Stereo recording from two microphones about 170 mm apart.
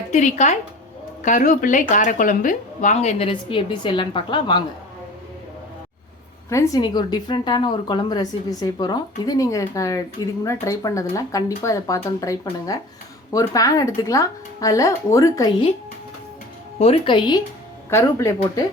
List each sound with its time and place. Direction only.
0.1 s a woman's voice: 45° left (ahead or behind); by 4.6 s 25° left (ahead or behind)
6.5 s a woman's voice: 20° left (ahead or behind)
16.7 s a woman's voice: 35° left (ahead or behind); by 18.6 s 15° left (ahead or behind)